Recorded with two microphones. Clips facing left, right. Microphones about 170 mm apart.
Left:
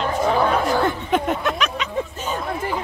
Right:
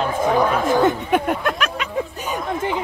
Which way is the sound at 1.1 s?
10° right (ahead or behind).